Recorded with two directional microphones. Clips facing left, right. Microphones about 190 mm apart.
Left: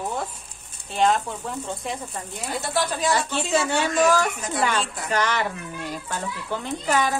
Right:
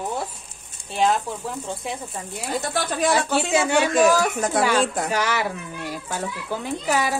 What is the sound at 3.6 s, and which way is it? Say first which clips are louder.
A child's voice: right 4 dB; 15° right (ahead or behind).